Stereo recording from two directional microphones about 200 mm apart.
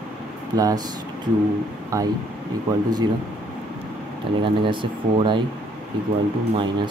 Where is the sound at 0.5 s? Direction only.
20° right (ahead or behind).